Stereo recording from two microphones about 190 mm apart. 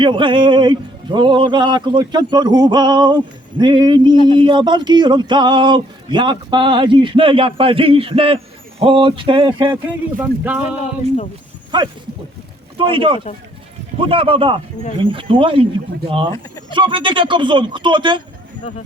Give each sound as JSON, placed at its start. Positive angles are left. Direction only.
{"t": 0.0, "sound": "speech", "side_deg": -25}
{"t": 10.2, "sound": "speech", "side_deg": -10}
{"t": 11.7, "sound": "speech", "side_deg": -25}